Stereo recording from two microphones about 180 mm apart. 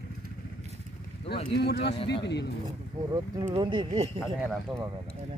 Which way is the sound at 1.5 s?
65° left (ahead or behind).